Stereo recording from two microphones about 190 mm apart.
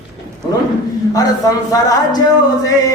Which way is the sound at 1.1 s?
20° left (ahead or behind).